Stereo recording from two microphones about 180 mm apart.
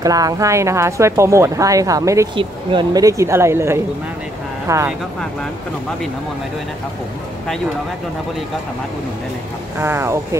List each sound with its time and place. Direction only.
0.0 s speech: 20° right (ahead or behind)
9.8 s speech: 15° right (ahead or behind)